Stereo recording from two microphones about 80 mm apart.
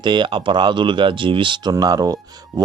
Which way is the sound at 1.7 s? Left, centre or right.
Right.